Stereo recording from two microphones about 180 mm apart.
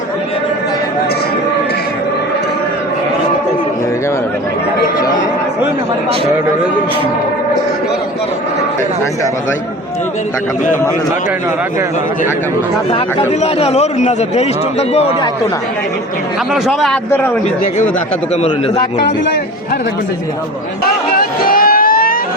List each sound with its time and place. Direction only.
13.4 s a man's voice: 35° left (ahead or behind)
16.5 s speech: centre (ahead or behind)
21.1 s a sound: 55° left (ahead or behind)